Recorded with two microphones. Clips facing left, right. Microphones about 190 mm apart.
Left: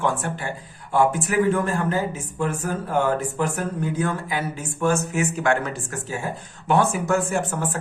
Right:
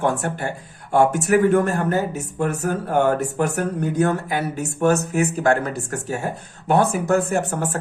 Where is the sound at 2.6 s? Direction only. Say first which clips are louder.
Right 4 dB; 65° right (ahead or behind).